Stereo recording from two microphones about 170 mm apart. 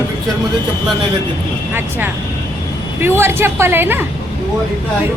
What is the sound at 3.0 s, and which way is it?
A woman's voice, 15° right (ahead or behind).